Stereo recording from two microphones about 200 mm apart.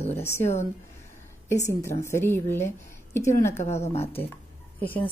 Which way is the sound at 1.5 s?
15° left (ahead or behind).